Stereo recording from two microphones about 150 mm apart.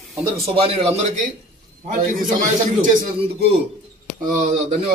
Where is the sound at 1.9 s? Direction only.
65° right (ahead or behind).